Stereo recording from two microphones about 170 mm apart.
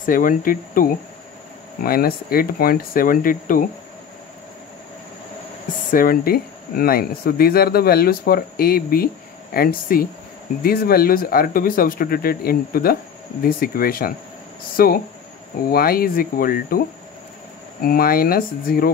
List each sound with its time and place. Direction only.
0.0 s speech: 55° left (ahead or behind)
5.9 s speech: 55° left (ahead or behind)
17.8 s speech: 60° left (ahead or behind)